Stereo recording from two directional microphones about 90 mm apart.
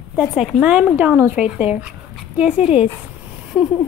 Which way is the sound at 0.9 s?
25° right (ahead or behind).